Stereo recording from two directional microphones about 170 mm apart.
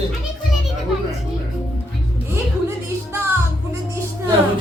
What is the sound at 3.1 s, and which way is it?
Music, 15° right (ahead or behind).